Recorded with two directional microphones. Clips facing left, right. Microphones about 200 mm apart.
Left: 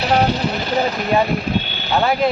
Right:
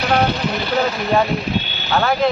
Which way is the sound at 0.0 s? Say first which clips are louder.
Left 1 dB; 35° left (ahead or behind).